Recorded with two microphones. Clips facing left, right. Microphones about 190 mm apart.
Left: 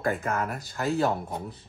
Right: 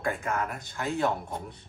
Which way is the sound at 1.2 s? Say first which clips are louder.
Left 2 dB; 5° left (ahead or behind).